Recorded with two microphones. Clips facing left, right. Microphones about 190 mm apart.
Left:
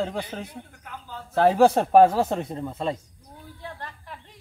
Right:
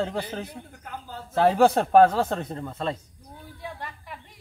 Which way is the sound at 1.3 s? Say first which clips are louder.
Left 1 dB; centre (ahead or behind).